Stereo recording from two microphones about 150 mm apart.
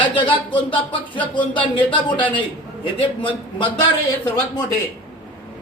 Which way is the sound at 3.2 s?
35° left (ahead or behind).